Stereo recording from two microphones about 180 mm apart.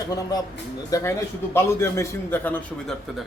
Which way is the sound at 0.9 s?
15° left (ahead or behind).